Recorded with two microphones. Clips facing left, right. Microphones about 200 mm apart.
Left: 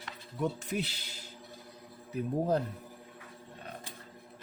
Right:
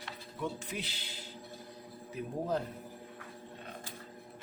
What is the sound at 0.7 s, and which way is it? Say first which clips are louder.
Speech: left 6 dB; 40° left (ahead or behind).